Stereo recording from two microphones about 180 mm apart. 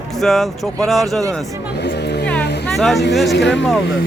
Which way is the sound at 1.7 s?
70° left (ahead or behind).